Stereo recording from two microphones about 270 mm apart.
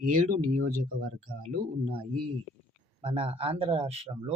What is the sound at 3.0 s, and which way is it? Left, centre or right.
Speech, right.